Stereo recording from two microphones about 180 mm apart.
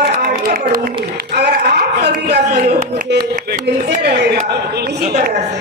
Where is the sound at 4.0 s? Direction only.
65° right (ahead or behind).